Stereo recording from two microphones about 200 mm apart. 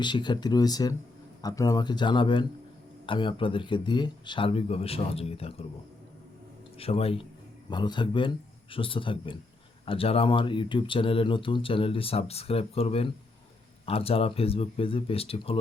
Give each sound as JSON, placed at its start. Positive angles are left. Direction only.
{"t": 0.0, "sound": "speech", "side_deg": 20}
{"t": 6.7, "sound": "speech", "side_deg": 30}